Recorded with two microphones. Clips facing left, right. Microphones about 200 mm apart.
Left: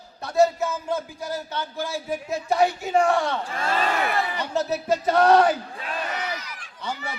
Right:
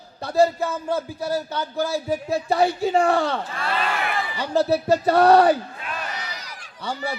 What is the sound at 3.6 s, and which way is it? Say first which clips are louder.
Speech: left 1 dB; 45° left (ahead or behind).